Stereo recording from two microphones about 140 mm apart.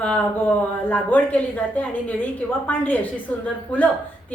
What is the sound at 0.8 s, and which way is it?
A woman's voice, 10° left (ahead or behind).